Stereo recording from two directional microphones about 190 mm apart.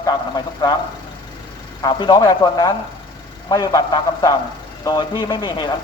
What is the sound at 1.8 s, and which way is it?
A man's voice, 25° left (ahead or behind).